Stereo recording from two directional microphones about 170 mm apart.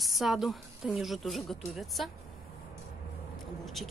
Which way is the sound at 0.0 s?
Centre (ahead or behind).